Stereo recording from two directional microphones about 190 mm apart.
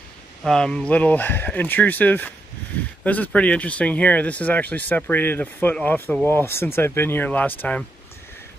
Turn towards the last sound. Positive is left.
turn(degrees=10)  # may be behind; listen again after turning